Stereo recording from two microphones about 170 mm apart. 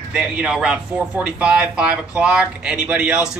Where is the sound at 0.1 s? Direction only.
5° right (ahead or behind).